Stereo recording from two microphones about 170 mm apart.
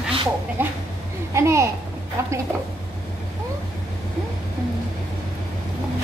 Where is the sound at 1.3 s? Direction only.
15° right (ahead or behind).